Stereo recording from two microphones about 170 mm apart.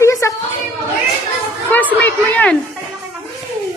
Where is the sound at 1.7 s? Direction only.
10° left (ahead or behind).